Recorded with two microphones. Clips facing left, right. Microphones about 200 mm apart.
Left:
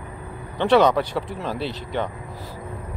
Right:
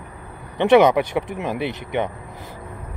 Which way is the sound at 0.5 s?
20° right (ahead or behind).